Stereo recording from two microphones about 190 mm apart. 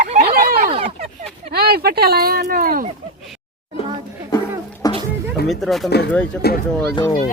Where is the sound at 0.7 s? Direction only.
30° right (ahead or behind).